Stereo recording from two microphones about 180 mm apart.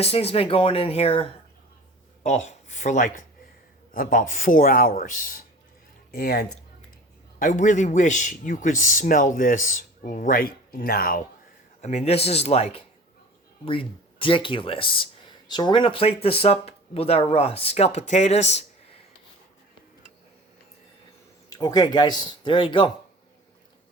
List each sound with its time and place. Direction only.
0.0 s a man's voice: 35° left (ahead or behind)
6.1 s speech: 60° left (ahead or behind)
7.3 s a man's voice: 50° left (ahead or behind)
11.8 s speech: 40° left (ahead or behind)
21.5 s speech: 20° left (ahead or behind)